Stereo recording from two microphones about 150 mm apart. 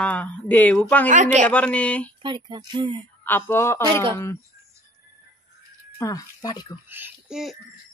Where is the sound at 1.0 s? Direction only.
55° right (ahead or behind).